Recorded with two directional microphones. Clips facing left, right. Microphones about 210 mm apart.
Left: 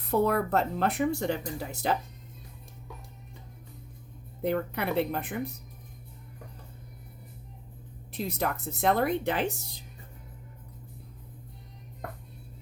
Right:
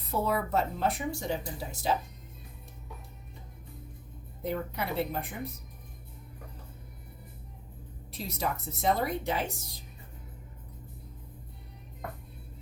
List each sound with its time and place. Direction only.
0.1 s speech: 65° left (ahead or behind)
4.4 s speech: 65° left (ahead or behind)
8.2 s speech: 60° left (ahead or behind)